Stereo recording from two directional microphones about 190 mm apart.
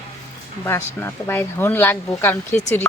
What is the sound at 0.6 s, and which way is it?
Speech, 15° left (ahead or behind).